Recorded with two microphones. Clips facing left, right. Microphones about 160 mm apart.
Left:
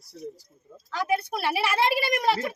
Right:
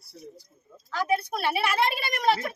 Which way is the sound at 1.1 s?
5° left (ahead or behind).